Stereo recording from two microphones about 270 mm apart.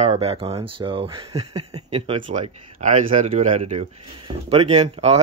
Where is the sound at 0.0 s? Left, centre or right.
Right.